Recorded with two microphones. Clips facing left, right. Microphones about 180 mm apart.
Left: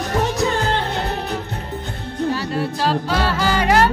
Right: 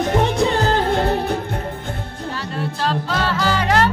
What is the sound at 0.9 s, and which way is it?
Music, 55° right (ahead or behind).